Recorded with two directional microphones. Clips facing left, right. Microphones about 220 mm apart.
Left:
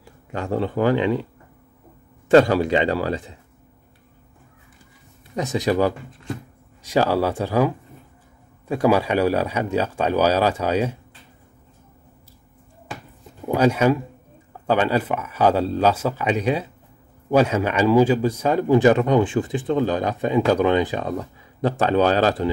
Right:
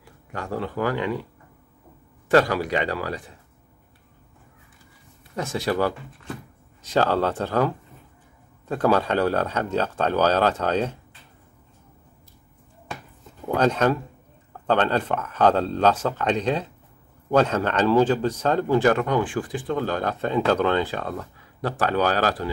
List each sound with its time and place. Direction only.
0.3 s speech: 25° left (ahead or behind)
2.2 s speech: 25° left (ahead or behind)
5.3 s a man's voice: 20° left (ahead or behind)
13.5 s a man's voice: 10° left (ahead or behind)